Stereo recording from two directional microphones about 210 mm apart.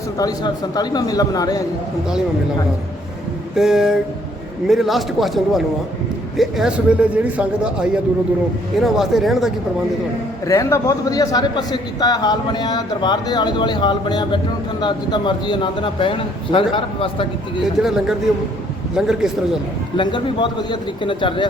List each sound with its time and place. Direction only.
0.2 s a man's voice: 15° left (ahead or behind)
3.5 s speech: centre (ahead or behind)
10.4 s a man's voice: 15° left (ahead or behind)
17.8 s speech: centre (ahead or behind)
20.0 s a man's voice: 20° left (ahead or behind)